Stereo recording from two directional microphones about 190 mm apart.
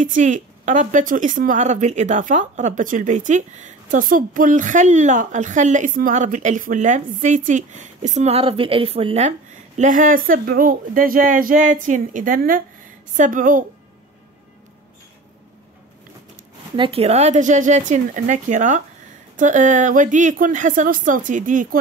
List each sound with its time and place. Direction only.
0.0 s a woman's voice: 40° right (ahead or behind)
16.7 s a woman's voice: 30° right (ahead or behind)